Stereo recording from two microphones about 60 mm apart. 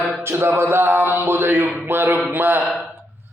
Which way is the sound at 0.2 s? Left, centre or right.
Right.